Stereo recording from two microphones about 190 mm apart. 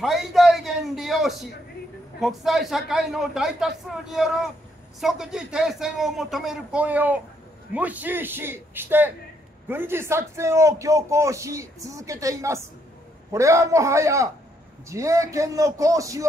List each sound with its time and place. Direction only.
0.0 s a man's voice: centre (ahead or behind); by 16.3 s 15° right (ahead or behind)